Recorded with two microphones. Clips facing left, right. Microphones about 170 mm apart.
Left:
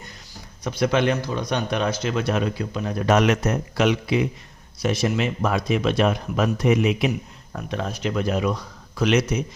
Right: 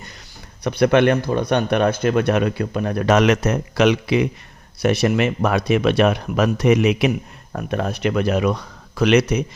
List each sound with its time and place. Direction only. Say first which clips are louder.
0.6 s speech: right 6 dB; 60° right (ahead or behind); by 4.3 s 80° right
4.8 s speech: right 5 dB; 65° right (ahead or behind)
7.5 s speech: right 5 dB; 55° right (ahead or behind)